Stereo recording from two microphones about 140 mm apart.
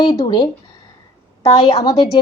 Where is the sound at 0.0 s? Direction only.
30° left (ahead or behind).